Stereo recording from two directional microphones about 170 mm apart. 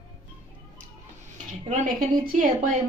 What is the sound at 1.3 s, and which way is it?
Dishes, 45° right (ahead or behind).